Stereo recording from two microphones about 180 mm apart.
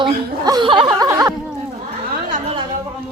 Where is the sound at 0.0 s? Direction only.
25° right (ahead or behind).